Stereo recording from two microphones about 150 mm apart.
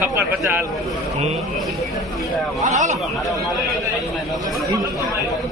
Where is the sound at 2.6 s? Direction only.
55° right (ahead or behind).